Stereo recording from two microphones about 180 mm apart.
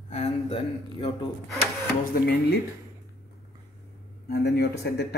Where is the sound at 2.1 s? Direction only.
60° left (ahead or behind).